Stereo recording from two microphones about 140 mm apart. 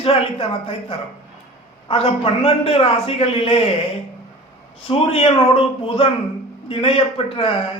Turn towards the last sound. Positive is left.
turn(degrees=40)  # may be behind; listen again after turning